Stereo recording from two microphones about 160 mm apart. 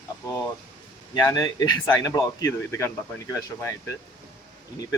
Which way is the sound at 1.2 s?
20° left (ahead or behind).